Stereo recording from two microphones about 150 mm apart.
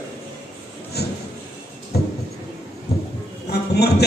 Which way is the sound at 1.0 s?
90° left.